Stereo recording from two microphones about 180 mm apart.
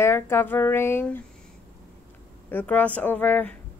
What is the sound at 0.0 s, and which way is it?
Speech, 15° left (ahead or behind).